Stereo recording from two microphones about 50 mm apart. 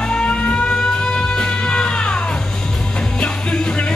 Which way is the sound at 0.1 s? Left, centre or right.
Left.